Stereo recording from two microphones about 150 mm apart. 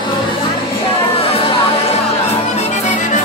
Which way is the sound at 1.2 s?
40° left (ahead or behind).